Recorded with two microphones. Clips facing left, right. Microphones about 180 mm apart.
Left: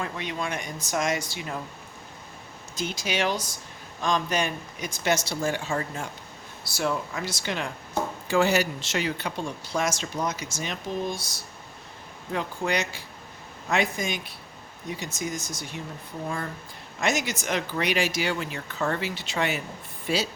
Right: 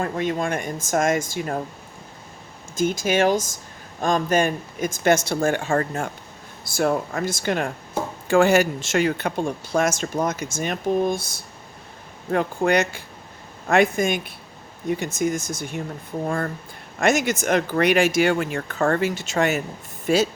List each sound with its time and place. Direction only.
0.0 s speech: 45° right (ahead or behind)
2.7 s speech: 50° right (ahead or behind)